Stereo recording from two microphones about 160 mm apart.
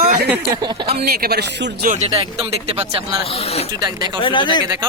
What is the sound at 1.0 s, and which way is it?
Speech, 75° right (ahead or behind).